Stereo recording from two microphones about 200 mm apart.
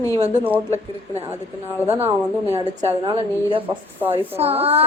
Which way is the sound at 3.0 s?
25° right (ahead or behind).